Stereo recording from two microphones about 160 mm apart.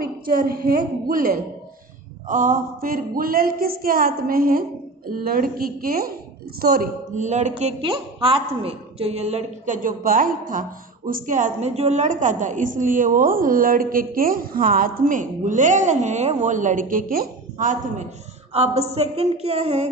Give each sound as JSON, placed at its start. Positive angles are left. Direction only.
{"t": 0.0, "sound": "a woman's voice", "side_deg": -65}
{"t": 7.2, "sound": "a woman's voice", "side_deg": -45}
{"t": 9.8, "sound": "a woman's voice", "side_deg": -60}
{"t": 18.5, "sound": "a woman's voice", "side_deg": -40}